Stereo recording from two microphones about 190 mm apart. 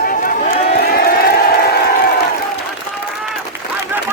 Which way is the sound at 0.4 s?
55° left (ahead or behind).